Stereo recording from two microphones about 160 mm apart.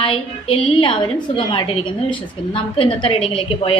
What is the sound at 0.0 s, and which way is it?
A woman's voice, 35° left (ahead or behind).